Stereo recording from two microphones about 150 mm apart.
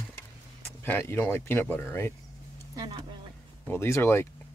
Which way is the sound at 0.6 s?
15° left (ahead or behind).